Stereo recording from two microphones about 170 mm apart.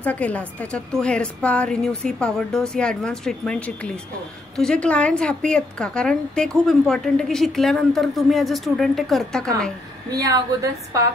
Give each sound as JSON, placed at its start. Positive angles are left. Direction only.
{"t": 0.0, "sound": "a woman's voice", "side_deg": 10}
{"t": 10.1, "sound": "a woman's voice", "side_deg": -20}